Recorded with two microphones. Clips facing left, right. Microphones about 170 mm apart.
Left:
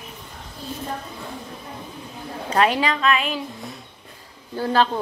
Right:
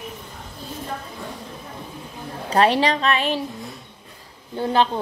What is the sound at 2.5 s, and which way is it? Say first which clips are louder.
Speech: right 2 dB; 35° right (ahead or behind).